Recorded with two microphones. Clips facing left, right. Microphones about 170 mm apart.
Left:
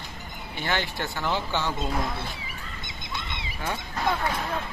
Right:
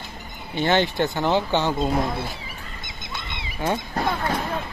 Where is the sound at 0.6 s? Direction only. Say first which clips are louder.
Right 9 dB; 25° right (ahead or behind).